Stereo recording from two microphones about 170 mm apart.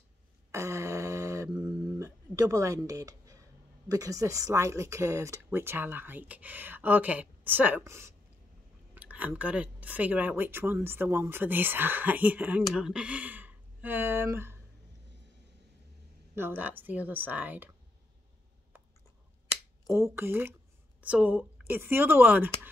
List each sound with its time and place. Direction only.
0.5 s a sound: 15° right (ahead or behind)
3.9 s speech: 20° right (ahead or behind)
16.3 s speech: 10° right (ahead or behind)
19.9 s speech: 15° right (ahead or behind)